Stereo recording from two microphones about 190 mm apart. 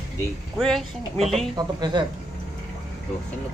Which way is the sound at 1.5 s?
20° right (ahead or behind).